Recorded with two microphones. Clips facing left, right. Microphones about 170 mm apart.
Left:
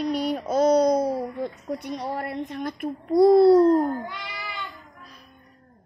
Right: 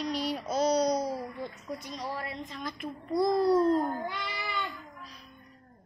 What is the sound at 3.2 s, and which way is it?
Speech, 30° left (ahead or behind).